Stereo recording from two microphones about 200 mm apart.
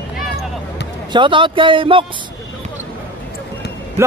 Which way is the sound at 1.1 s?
25° right (ahead or behind).